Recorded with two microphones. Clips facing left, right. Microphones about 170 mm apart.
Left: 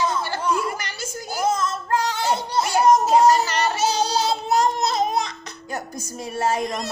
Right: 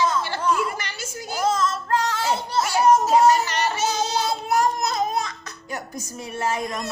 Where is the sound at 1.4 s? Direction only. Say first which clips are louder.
Even; 10° left (ahead or behind).